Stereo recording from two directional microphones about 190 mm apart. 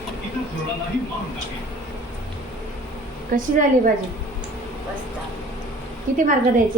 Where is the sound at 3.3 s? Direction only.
45° right (ahead or behind).